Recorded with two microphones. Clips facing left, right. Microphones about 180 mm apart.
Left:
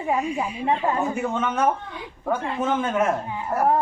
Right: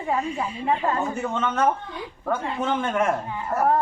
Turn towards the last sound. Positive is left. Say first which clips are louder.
# left 1 dB
turn(degrees=10)  # may be behind; listen again after turning